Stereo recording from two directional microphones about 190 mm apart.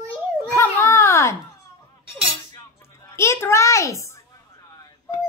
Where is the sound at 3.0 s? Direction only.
15° left (ahead or behind).